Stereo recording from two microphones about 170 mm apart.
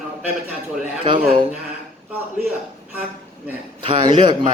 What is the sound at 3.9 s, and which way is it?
Speech, 25° right (ahead or behind).